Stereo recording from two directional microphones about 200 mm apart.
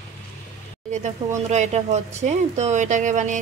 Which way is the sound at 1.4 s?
35° right (ahead or behind).